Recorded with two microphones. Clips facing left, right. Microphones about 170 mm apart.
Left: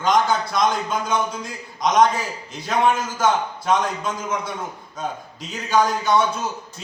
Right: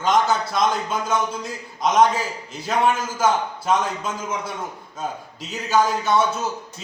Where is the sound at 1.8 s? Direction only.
5° right (ahead or behind).